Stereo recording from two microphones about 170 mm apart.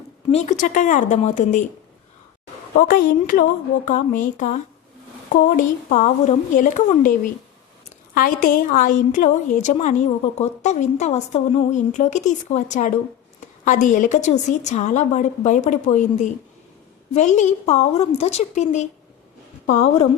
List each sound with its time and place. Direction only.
0.3 s speech: 40° left (ahead or behind)
2.8 s speech: 50° left (ahead or behind)
8.1 s speech: 55° left (ahead or behind)